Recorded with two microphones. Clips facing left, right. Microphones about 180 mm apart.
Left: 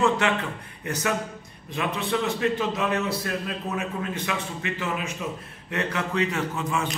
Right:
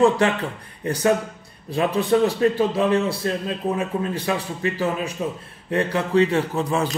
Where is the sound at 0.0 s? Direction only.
35° right (ahead or behind).